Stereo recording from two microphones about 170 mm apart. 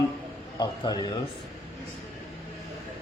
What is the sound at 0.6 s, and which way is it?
Speech, 25° left (ahead or behind).